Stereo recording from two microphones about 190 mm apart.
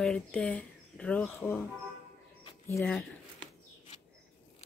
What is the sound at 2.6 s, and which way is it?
Speech, 10° left (ahead or behind).